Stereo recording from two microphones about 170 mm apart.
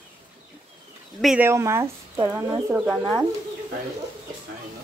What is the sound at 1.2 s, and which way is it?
Speech, 5° right (ahead or behind).